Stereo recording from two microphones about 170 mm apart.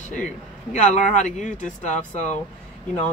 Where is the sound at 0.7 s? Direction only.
45° left (ahead or behind).